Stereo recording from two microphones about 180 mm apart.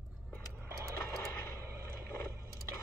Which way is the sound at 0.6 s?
15° right (ahead or behind).